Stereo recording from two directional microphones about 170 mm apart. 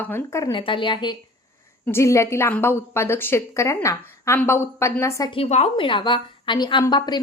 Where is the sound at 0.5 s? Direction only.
30° left (ahead or behind).